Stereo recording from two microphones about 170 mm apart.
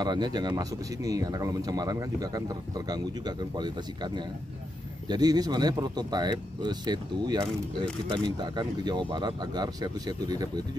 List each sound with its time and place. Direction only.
0.0 s speech: 25° right (ahead or behind)